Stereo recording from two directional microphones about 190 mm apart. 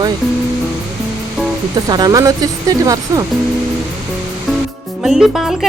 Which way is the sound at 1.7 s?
20° right (ahead or behind).